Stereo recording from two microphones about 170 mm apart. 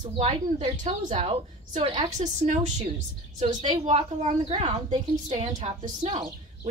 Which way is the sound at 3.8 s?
40° right (ahead or behind).